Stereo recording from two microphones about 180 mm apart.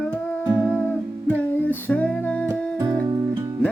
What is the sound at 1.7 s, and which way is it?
Music, 10° left (ahead or behind).